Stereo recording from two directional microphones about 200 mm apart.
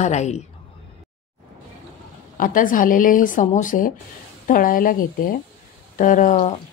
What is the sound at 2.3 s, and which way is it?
Speech, 45° left (ahead or behind).